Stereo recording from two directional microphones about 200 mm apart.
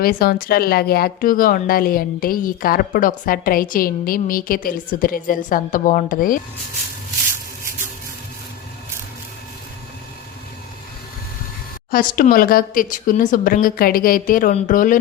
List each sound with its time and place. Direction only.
0.0 s speech: 50° left (ahead or behind)
11.9 s speech: 45° left (ahead or behind)